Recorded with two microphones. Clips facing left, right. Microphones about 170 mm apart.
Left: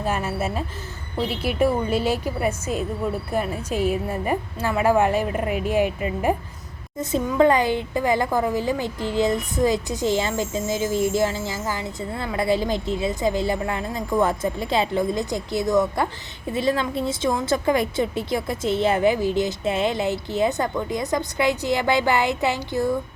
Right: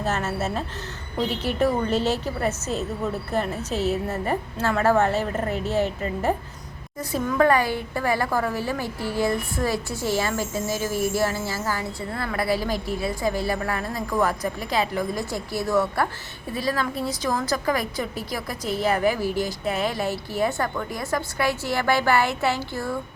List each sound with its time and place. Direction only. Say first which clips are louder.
0.0 s a woman's voice: left 1 dB; 10° left (ahead or behind)
7.0 s a woman's voice: left 3 dB; 20° left (ahead or behind)